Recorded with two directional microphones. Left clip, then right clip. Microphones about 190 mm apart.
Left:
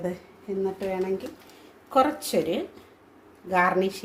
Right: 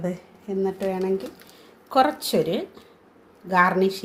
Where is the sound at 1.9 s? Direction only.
30° right (ahead or behind).